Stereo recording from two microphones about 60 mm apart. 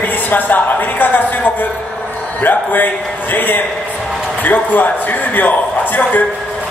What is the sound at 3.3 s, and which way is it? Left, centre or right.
A man's voice, left.